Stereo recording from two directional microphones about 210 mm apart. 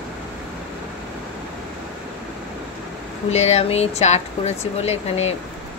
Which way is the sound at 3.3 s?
30° left (ahead or behind).